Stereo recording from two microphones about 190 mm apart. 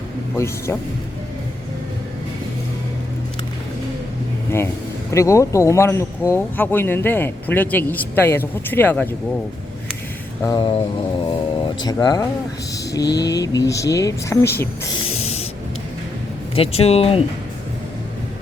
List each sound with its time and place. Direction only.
0.3 s speech: 15° left (ahead or behind)
5.1 s speech: 15° left (ahead or behind)
10.4 s mantra: 20° left (ahead or behind)
11.3 s speech: 25° left (ahead or behind)
15.2 s spray: 35° left (ahead or behind)
16.6 s speech: 30° left (ahead or behind)